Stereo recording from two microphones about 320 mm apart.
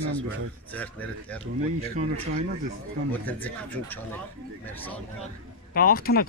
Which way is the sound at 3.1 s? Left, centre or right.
Centre.